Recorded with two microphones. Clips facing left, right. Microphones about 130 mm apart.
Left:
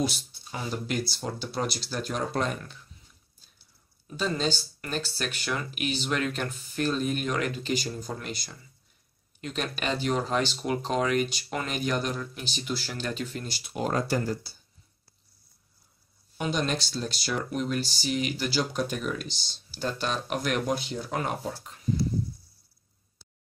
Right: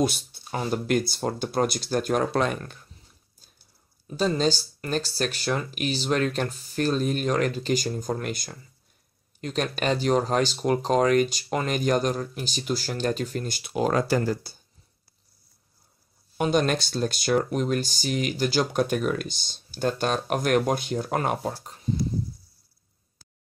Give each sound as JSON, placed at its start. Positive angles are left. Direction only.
{"t": 0.0, "sound": "speech", "side_deg": -55}
{"t": 2.3, "sound": "speech", "side_deg": -70}
{"t": 2.6, "sound": "speech", "side_deg": -50}
{"t": 4.2, "sound": "speech", "side_deg": -40}
{"t": 13.6, "sound": "speech", "side_deg": -90}
{"t": 16.3, "sound": "speech", "side_deg": -50}